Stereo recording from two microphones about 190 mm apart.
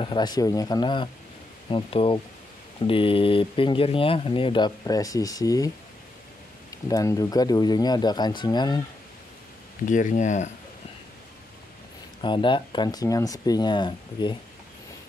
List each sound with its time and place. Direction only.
0.0 s speech: 25° left (ahead or behind)
6.7 s speech: 15° left (ahead or behind)
9.8 s speech: 40° left (ahead or behind)
12.2 s speech: 25° left (ahead or behind)